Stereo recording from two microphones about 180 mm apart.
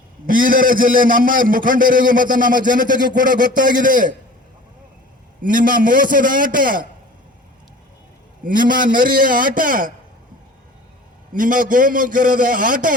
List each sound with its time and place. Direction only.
0.3 s a man's voice: 50° right (ahead or behind)
5.4 s a man's voice: 50° right (ahead or behind)
8.4 s a man's voice: 50° right (ahead or behind)
11.3 s a man's voice: 50° right (ahead or behind)